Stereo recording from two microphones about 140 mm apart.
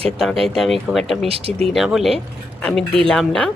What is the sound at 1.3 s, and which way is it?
Speech, 45° right (ahead or behind).